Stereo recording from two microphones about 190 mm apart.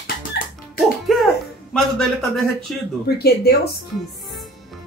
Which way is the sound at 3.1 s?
55° left (ahead or behind).